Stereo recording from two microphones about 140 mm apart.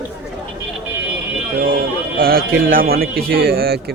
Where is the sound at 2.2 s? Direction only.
90° right.